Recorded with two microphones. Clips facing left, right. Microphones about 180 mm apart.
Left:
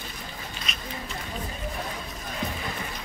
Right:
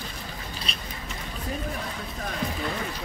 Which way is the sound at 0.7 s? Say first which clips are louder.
Right 1 dB; 30° right (ahead or behind).